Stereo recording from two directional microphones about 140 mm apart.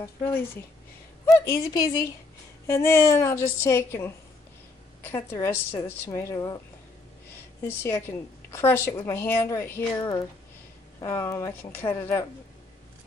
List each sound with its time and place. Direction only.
0.2 s a woman's voice: 15° left (ahead or behind)
7.6 s a woman's voice: 20° left (ahead or behind)
11.1 s a woman's voice: 20° left (ahead or behind)